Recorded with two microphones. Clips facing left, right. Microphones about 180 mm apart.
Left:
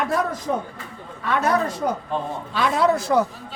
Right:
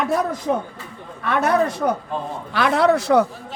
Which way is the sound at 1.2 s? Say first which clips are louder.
Right 3 dB; 60° right (ahead or behind).